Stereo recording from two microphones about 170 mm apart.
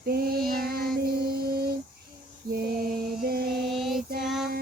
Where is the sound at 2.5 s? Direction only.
60° right (ahead or behind).